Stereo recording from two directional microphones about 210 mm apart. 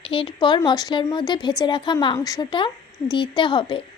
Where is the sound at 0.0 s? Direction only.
25° left (ahead or behind).